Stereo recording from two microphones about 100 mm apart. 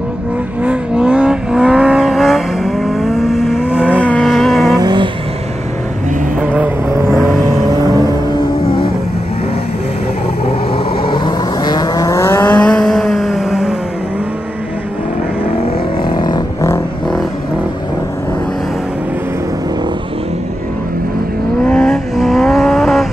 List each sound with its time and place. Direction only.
0.7 s vehicle: 10° right (ahead or behind)
4.2 s vehicle: centre (ahead or behind)
4.7 s vehicle: 45° right (ahead or behind)
6.4 s vehicle: 15° right (ahead or behind)
7.4 s vehicle: 40° right (ahead or behind)
11.1 s vehicle: 50° left (ahead or behind); by 12.4 s 30° left (ahead or behind)
12.4 s vehicle: 10° left (ahead or behind); by 13.7 s 5° right (ahead or behind)
16.0 s a sound: 50° left (ahead or behind)
21.6 s vehicle: 5° left (ahead or behind)